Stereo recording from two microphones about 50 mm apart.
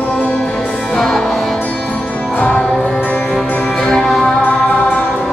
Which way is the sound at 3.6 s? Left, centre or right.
Centre.